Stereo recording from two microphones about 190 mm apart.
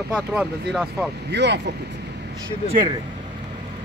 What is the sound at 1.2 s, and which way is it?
Speech, 65° right (ahead or behind).